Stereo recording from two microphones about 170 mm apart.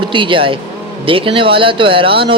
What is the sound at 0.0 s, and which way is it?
Speech, 30° right (ahead or behind).